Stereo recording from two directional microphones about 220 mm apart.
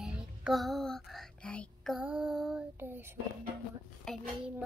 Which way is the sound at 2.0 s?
5° right (ahead or behind).